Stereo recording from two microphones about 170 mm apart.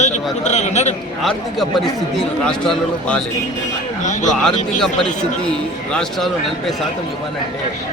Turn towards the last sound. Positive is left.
turn(degrees=0)  # may be behind; listen again after turning